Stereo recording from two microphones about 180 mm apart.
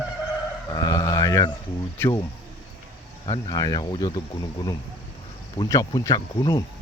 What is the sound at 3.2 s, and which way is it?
Speech, 25° left (ahead or behind).